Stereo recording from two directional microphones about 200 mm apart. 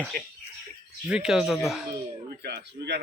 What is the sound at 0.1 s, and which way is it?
Speech, 50° right (ahead or behind).